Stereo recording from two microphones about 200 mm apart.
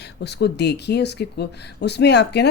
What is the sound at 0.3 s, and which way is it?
Speech, 55° left (ahead or behind).